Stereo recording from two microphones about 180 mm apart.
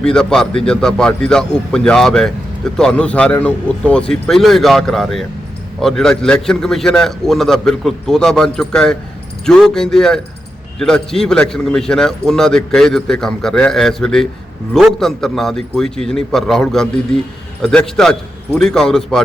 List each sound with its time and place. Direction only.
0.0 s a man's voice: 5° left (ahead or behind)